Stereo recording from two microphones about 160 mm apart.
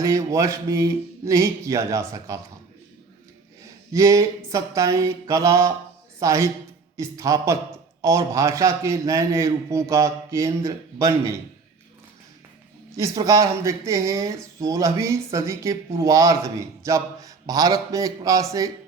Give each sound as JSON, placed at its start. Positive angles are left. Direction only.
{"t": 0.0, "sound": "speech", "side_deg": -20}
{"t": 3.9, "sound": "speech", "side_deg": -20}
{"t": 13.0, "sound": "speech", "side_deg": -20}